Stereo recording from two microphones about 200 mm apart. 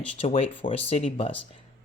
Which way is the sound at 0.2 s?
30° left (ahead or behind).